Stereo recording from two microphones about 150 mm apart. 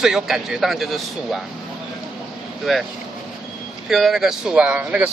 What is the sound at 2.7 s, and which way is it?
Speech, centre (ahead or behind).